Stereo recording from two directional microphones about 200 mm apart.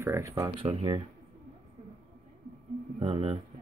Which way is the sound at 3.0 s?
25° right (ahead or behind).